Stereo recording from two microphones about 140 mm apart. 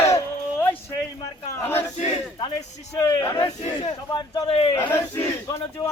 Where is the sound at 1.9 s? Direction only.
55° left (ahead or behind).